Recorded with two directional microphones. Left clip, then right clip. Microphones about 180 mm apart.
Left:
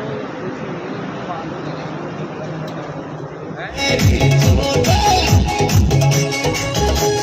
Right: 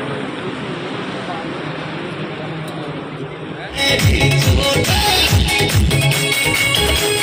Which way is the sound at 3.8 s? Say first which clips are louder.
Right 2 dB; 60° left (ahead or behind).